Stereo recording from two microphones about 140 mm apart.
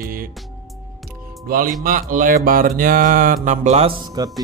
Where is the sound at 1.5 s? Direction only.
80° right.